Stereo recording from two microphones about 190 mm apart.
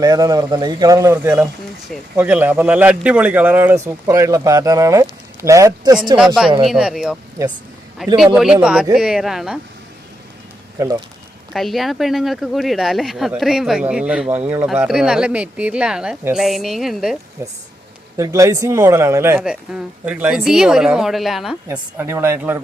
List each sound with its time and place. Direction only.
0.0 s a man's voice: 20° right (ahead or behind)
6.1 s speech: 5° right (ahead or behind)
11.5 s speech: centre (ahead or behind)
17.4 s speech: 15° right (ahead or behind)